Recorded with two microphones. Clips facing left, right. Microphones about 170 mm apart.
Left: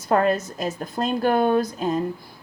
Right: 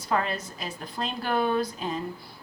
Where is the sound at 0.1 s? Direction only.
45° left (ahead or behind).